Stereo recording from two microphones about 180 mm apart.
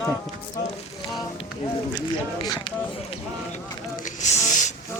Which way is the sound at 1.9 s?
25° left (ahead or behind).